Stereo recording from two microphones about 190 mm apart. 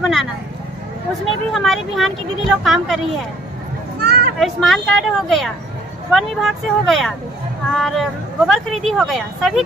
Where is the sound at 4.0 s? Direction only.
55° right (ahead or behind).